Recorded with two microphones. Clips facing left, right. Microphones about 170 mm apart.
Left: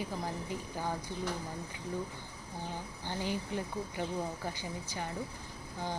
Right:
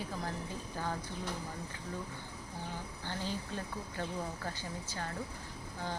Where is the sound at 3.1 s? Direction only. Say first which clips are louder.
Left 4 dB; 15° left (ahead or behind).